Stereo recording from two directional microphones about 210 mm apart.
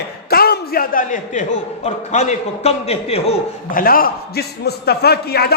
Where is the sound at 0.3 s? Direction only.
45° left (ahead or behind).